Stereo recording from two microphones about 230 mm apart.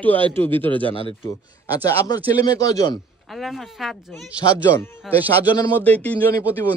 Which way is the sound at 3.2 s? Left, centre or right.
Centre.